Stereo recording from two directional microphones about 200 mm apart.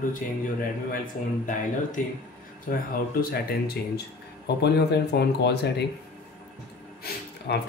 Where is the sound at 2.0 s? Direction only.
40° left (ahead or behind).